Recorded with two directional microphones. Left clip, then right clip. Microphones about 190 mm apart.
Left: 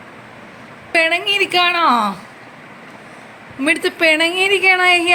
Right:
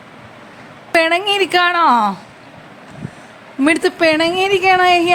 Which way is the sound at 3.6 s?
25° right (ahead or behind).